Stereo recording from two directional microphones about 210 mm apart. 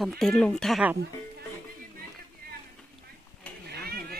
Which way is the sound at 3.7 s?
50° right (ahead or behind).